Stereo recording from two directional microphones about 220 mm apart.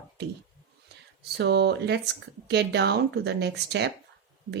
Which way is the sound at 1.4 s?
50° right (ahead or behind).